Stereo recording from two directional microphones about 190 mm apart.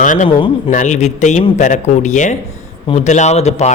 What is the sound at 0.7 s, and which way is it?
Speech, 40° left (ahead or behind).